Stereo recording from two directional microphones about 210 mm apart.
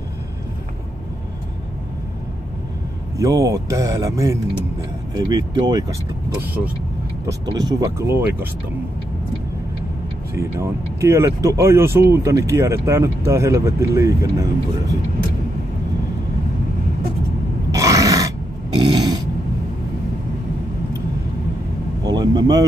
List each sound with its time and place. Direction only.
3.2 s speech: 15° right (ahead or behind)
7.2 s speech: 15° right (ahead or behind)
10.3 s speech: 15° right (ahead or behind)
17.6 s a sound: 15° right (ahead or behind)
22.0 s vehicle: 20° right (ahead or behind)